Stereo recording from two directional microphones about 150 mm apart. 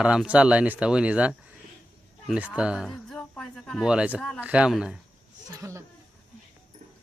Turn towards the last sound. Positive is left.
turn(degrees=-20)  # may be behind; listen again after turning